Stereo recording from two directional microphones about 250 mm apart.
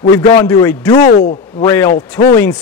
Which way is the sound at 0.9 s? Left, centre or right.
Left.